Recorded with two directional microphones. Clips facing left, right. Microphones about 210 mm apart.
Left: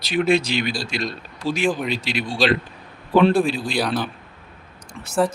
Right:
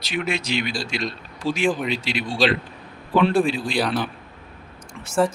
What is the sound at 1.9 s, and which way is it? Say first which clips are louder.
Speech: left 1 dB; 40° left (ahead or behind).